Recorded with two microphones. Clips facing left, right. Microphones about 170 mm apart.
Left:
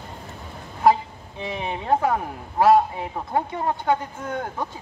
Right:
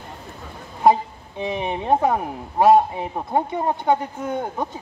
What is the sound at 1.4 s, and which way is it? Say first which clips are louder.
Speech: right 4 dB; 20° right (ahead or behind).